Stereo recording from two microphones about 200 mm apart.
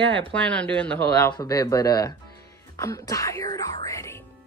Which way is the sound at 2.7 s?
15° left (ahead or behind).